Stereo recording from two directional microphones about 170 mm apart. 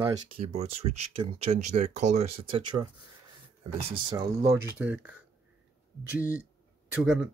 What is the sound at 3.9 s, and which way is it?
Speech, 30° right (ahead or behind).